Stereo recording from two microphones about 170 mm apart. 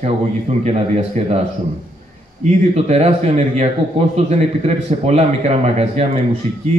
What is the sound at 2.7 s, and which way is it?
A man's voice, 40° right (ahead or behind).